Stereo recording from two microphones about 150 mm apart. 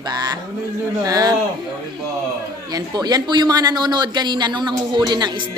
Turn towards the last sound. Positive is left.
turn(degrees=-30)  # may be behind; listen again after turning